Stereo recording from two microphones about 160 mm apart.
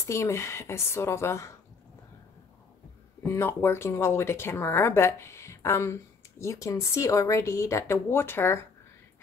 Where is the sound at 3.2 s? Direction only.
15° left (ahead or behind).